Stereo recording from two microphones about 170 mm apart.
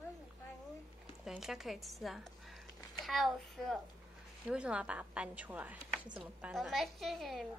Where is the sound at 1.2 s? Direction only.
5° right (ahead or behind).